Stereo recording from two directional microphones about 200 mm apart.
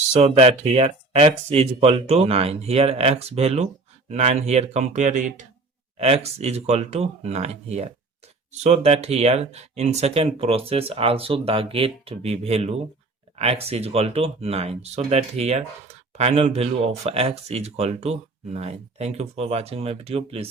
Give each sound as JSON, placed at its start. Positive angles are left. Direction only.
{"t": 0.1, "sound": "speech", "side_deg": -30}